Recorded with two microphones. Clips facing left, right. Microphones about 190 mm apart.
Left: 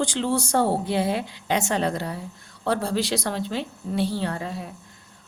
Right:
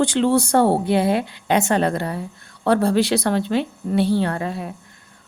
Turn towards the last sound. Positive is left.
turn(degrees=-60)  # may be behind; listen again after turning